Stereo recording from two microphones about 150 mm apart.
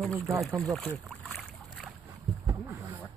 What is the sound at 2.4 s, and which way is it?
Boat, 20° right (ahead or behind).